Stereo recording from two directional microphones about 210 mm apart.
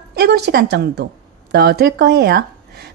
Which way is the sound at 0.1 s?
50° right (ahead or behind).